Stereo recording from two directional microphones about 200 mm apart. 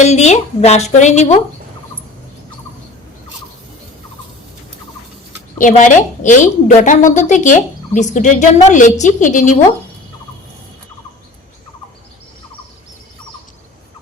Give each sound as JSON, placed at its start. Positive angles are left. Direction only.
{"t": 0.0, "sound": "a woman's voice", "side_deg": 35}
{"t": 5.5, "sound": "a woman's voice", "side_deg": 40}